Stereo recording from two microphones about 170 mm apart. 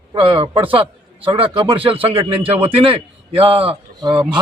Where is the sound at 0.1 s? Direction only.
30° right (ahead or behind).